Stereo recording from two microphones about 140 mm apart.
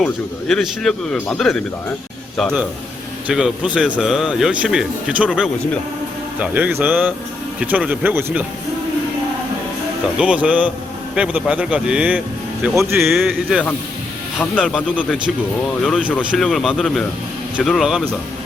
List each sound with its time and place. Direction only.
0.0 s speech: 5° left (ahead or behind)
3.2 s a man's voice: 5° right (ahead or behind)
10.2 s a man's voice: 5° right (ahead or behind)
13.1 s speech: 5° right (ahead or behind)
14.6 s speech: centre (ahead or behind)
16.3 s speech: centre (ahead or behind)